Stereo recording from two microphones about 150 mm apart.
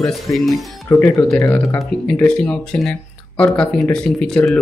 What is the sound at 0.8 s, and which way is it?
Speech, 15° left (ahead or behind).